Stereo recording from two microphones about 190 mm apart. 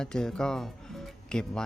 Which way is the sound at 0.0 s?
5° left (ahead or behind).